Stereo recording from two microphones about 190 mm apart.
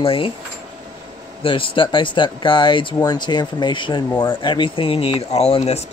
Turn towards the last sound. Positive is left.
turn(degrees=30)  # may be behind; listen again after turning